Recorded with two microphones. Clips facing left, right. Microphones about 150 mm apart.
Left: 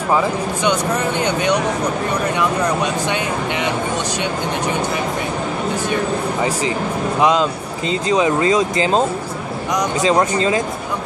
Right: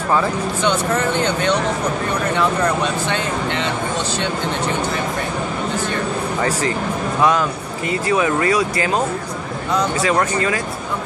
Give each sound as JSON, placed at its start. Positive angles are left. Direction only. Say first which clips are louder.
{"t": 0.1, "sound": "speech", "louder": "left 1 dB", "side_deg": 15}
{"t": 7.2, "sound": "speech", "louder": "left 1 dB", "side_deg": 15}